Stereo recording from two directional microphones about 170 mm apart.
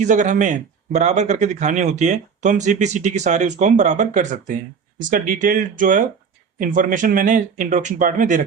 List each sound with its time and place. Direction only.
0.0 s speech: 45° right (ahead or behind)